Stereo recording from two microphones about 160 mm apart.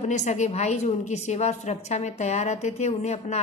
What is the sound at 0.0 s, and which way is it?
A woman's voice, 45° left (ahead or behind).